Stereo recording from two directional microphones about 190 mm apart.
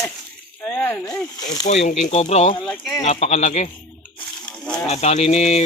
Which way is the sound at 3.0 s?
35° left (ahead or behind).